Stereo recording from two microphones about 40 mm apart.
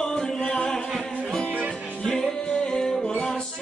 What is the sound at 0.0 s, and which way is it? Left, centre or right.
Music, centre.